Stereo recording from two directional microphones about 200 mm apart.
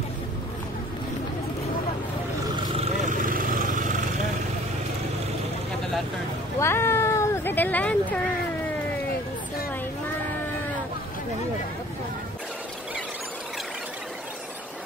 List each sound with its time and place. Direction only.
2.4 s vehicle: 25° right (ahead or behind)
3.1 s vehicle: 45° right (ahead or behind)
6.6 s cat: 10° left (ahead or behind)